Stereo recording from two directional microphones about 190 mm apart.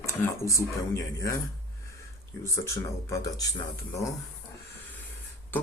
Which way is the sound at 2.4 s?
15° left (ahead or behind).